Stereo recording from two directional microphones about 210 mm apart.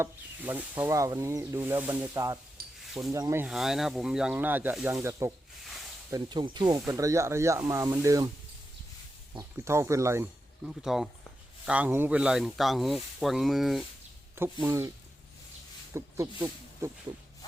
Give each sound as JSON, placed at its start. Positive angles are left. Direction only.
{"t": 0.0, "sound": "speech", "side_deg": -10}
{"t": 2.6, "sound": "sizzle", "side_deg": -45}
{"t": 3.1, "sound": "speech", "side_deg": -15}
{"t": 9.3, "sound": "speech", "side_deg": -15}
{"t": 10.7, "sound": "speech", "side_deg": 0}
{"t": 14.3, "sound": "speech", "side_deg": -10}
{"t": 16.0, "sound": "speech", "side_deg": -15}